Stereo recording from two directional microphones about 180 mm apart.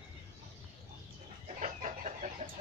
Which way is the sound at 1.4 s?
45° right (ahead or behind).